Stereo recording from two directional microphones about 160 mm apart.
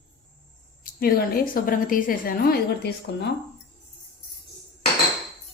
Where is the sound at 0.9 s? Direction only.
65° left (ahead or behind).